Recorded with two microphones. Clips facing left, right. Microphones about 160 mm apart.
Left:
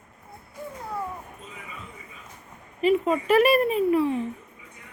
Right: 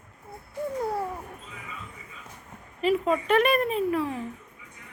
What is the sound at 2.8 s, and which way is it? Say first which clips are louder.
Speech: left 2 dB; centre (ahead or behind).